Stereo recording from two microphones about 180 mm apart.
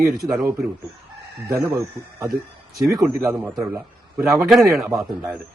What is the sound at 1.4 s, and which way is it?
Speech, 25° right (ahead or behind).